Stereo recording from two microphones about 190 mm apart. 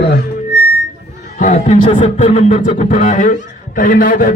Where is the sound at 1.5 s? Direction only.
40° left (ahead or behind).